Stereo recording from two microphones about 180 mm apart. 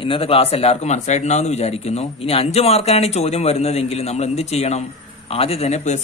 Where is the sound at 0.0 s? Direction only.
30° left (ahead or behind).